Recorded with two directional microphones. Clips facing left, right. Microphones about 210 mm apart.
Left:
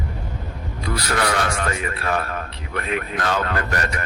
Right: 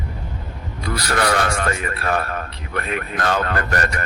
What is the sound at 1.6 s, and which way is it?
A man's voice, 45° right (ahead or behind).